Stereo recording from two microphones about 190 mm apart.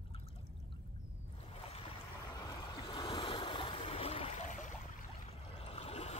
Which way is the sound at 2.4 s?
20° left (ahead or behind).